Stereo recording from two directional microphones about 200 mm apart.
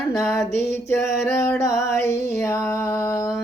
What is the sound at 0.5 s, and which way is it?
Music, 55° left (ahead or behind).